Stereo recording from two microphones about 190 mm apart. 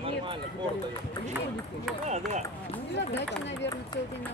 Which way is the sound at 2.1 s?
40° right (ahead or behind).